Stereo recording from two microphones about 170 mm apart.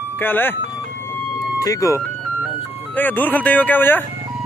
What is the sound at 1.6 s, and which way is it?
Speech, 20° left (ahead or behind).